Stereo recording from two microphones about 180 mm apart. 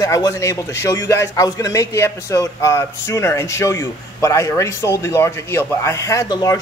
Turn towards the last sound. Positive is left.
turn(degrees=20)  # may be behind; listen again after turning